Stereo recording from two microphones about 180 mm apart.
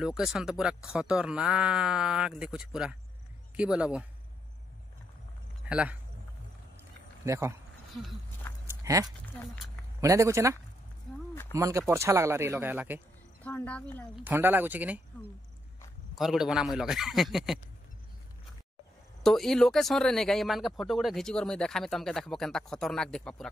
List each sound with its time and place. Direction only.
0.0 s speech: 5° right (ahead or behind)
5.7 s speech: 5° right (ahead or behind)
6.8 s a sound: 15° right (ahead or behind)
7.9 s speech: centre (ahead or behind)
8.6 s a sound: 20° right (ahead or behind)
9.9 s speech: 15° right (ahead or behind)
13.4 s a woman's voice: 10° left (ahead or behind)
14.1 s speech: 10° right (ahead or behind)
16.2 s speech: centre (ahead or behind)
19.2 s speech: centre (ahead or behind)